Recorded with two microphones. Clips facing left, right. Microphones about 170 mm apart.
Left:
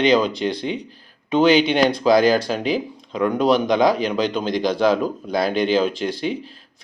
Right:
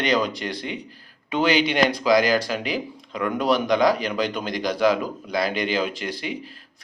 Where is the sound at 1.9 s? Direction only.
25° left (ahead or behind).